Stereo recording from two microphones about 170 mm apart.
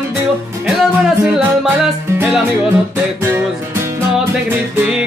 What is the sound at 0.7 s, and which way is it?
Music, 5° right (ahead or behind).